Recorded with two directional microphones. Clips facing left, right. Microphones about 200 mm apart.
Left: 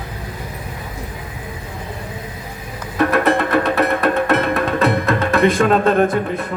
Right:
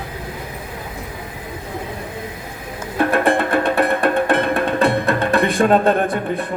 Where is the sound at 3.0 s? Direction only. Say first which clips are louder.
Left 1 dB; 30° right (ahead or behind).